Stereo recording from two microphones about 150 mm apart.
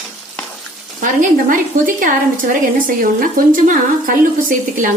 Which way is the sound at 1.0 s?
65° right (ahead or behind).